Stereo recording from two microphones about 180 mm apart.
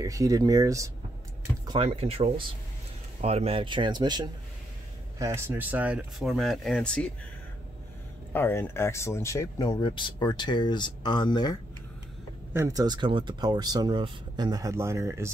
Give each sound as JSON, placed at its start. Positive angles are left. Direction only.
{"t": 0.0, "sound": "speech", "side_deg": -20}
{"t": 1.7, "sound": "speech", "side_deg": -35}
{"t": 5.2, "sound": "speech", "side_deg": -15}
{"t": 8.3, "sound": "speech", "side_deg": 10}
{"t": 12.5, "sound": "speech", "side_deg": -20}